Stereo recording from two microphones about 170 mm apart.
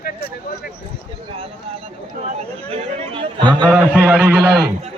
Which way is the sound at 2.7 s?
35° right (ahead or behind).